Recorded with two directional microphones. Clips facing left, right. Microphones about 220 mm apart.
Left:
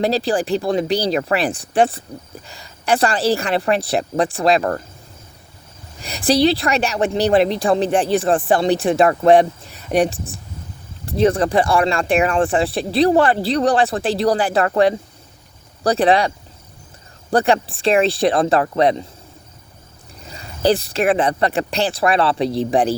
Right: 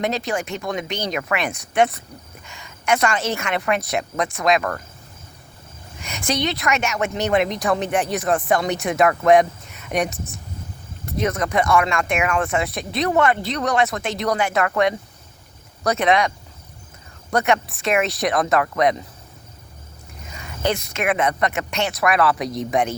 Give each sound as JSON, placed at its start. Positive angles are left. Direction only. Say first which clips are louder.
{"t": 0.0, "sound": "speech", "louder": "left 5 dB", "side_deg": 30}
{"t": 6.0, "sound": "speech", "louder": "left 8 dB", "side_deg": 35}
{"t": 17.3, "sound": "speech", "louder": "left 4 dB", "side_deg": 30}
{"t": 20.2, "sound": "speech", "louder": "left 6 dB", "side_deg": 35}